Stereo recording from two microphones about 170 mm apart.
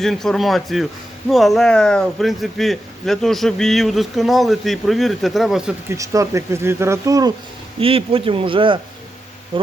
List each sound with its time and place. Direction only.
0.0 s speech: centre (ahead or behind)
6.0 s speech: 20° right (ahead or behind)
7.8 s a man's voice: 35° right (ahead or behind)